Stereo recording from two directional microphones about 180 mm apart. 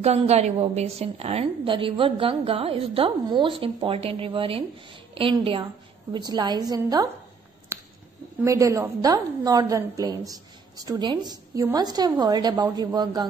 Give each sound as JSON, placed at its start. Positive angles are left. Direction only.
{"t": 0.0, "sound": "a woman's voice", "side_deg": -35}
{"t": 8.4, "sound": "a woman's voice", "side_deg": -15}